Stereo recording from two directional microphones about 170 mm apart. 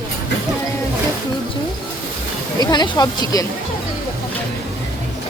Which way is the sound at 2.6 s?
25° left (ahead or behind).